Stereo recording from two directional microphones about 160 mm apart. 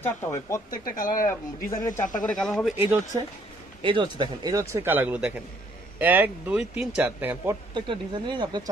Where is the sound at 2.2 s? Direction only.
5° left (ahead or behind).